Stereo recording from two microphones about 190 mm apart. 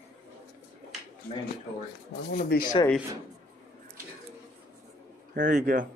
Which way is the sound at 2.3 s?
55° left (ahead or behind).